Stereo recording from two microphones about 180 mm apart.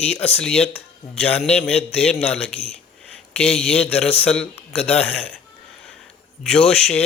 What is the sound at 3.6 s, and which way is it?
Speech, 5° left (ahead or behind).